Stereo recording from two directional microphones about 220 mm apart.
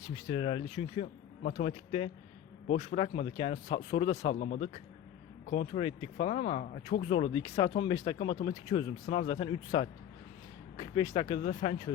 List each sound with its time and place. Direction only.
0.1 s speech: 20° left (ahead or behind); by 1.7 s 40° left (ahead or behind)
2.7 s speech: 25° left (ahead or behind)
5.5 s speech: 25° left (ahead or behind)
11.1 s speech: 30° left (ahead or behind)